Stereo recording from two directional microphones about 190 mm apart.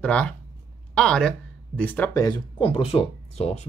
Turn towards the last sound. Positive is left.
turn(degrees=35)  # may be behind; listen again after turning